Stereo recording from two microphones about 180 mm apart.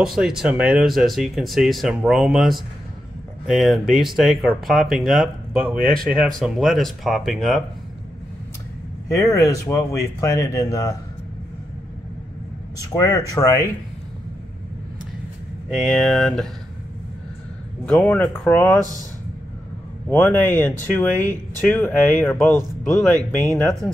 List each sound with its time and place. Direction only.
0.0 s speech: 5° right (ahead or behind)
6.0 s speech: centre (ahead or behind)
9.1 s speech: 20° left (ahead or behind)
12.7 s speech: 20° left (ahead or behind)
15.7 s speech: centre (ahead or behind)
17.8 s speech: 10° left (ahead or behind)
20.1 s speech: 10° left (ahead or behind)